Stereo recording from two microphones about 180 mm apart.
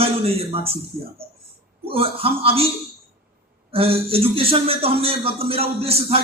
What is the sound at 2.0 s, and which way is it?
Speech, 30° right (ahead or behind).